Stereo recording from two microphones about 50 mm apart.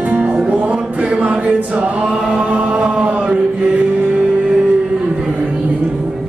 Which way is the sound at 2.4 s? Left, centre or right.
Right.